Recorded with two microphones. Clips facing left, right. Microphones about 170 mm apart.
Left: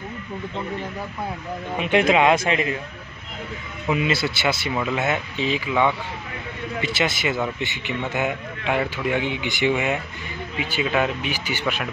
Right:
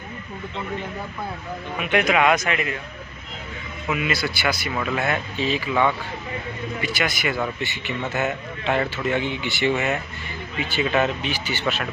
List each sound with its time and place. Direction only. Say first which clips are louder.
1.8 s speech: left 2 dB; 25° left (ahead or behind)
3.9 s speech: left 3 dB; 25° left (ahead or behind)
6.8 s speech: left 2 dB; 25° left (ahead or behind)